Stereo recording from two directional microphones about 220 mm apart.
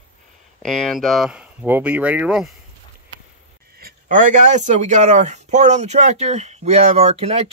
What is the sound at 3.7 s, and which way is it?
Speech, 40° right (ahead or behind).